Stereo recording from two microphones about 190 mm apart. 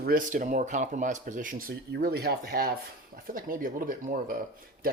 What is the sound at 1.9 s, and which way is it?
Speech, 55° right (ahead or behind).